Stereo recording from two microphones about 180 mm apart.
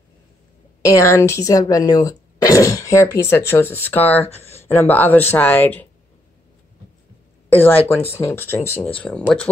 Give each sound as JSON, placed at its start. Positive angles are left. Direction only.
{"t": 0.9, "sound": "speech", "side_deg": 15}
{"t": 7.4, "sound": "speech", "side_deg": 10}